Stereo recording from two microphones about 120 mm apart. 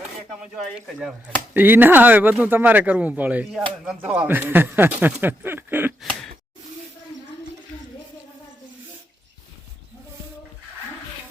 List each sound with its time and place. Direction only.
0.3 s speech: 5° right (ahead or behind)
1.5 s speech: 15° right (ahead or behind)
6.0 s a sound: 5° left (ahead or behind)